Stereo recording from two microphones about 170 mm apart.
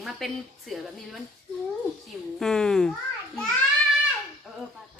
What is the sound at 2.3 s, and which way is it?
Speech, 5° left (ahead or behind).